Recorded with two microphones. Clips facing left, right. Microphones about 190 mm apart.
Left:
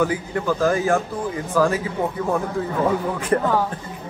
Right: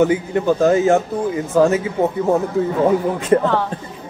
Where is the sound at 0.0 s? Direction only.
25° right (ahead or behind).